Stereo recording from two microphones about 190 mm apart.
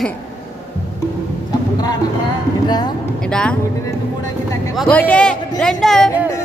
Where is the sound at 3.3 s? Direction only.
5° left (ahead or behind).